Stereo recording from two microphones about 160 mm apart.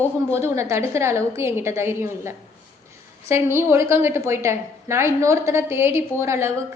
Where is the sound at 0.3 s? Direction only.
15° right (ahead or behind).